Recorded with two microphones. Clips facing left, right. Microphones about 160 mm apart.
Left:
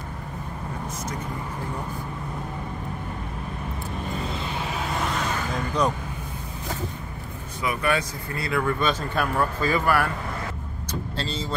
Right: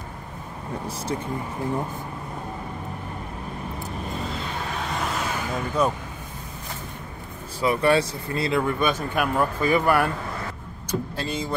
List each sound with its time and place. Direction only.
4.2 s a sound: centre (ahead or behind)
5.8 s speech: 5° right (ahead or behind)
7.6 s speech: 30° right (ahead or behind); by 11.5 s 15° right (ahead or behind)